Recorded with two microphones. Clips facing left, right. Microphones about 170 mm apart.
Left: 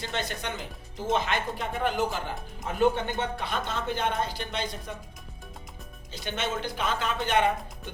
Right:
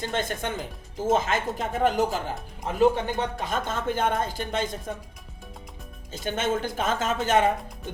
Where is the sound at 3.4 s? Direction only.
45° right (ahead or behind).